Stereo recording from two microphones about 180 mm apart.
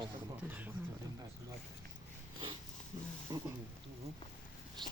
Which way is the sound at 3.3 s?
20° right (ahead or behind).